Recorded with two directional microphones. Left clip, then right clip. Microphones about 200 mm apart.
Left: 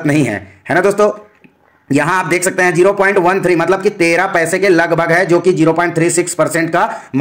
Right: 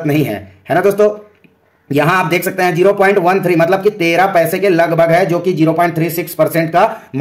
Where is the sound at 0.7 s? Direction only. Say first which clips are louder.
Even; 15° left (ahead or behind).